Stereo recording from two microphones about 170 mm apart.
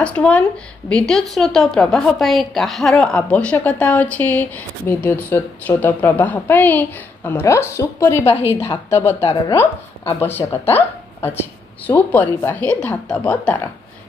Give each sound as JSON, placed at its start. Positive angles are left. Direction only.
{"t": 0.0, "sound": "a woman's voice", "side_deg": 5}
{"t": 9.2, "sound": "speech", "side_deg": 25}
{"t": 9.6, "sound": "a woman's voice", "side_deg": 10}